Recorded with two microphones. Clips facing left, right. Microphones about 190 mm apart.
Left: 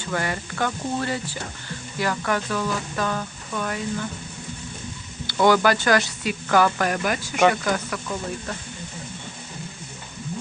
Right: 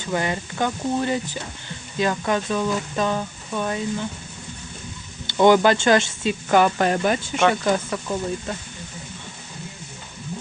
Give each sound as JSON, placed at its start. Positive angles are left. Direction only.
{"t": 0.1, "sound": "speech", "side_deg": -20}
{"t": 5.2, "sound": "speech", "side_deg": -20}